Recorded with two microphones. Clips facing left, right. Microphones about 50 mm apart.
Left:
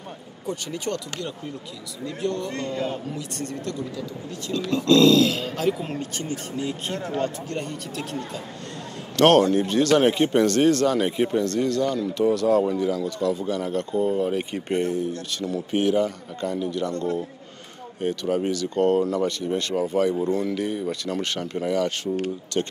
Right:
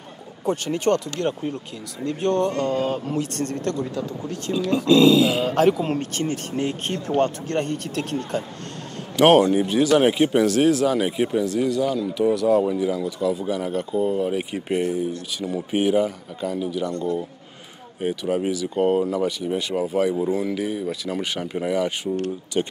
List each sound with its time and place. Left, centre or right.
0.5 s speech: right
4.7 s speech: centre
5.5 s speech: right
9.1 s speech: centre
18.0 s speech: centre